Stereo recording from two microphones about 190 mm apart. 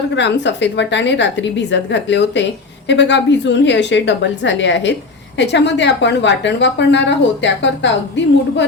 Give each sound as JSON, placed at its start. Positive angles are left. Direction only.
{"t": 0.2, "sound": "a woman's voice", "side_deg": 65}